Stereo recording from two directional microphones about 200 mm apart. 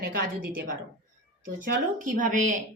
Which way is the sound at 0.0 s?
50° right (ahead or behind).